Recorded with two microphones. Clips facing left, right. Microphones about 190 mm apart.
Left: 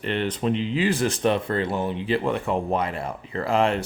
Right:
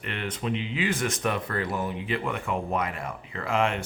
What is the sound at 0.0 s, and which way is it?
Speech, 30° left (ahead or behind).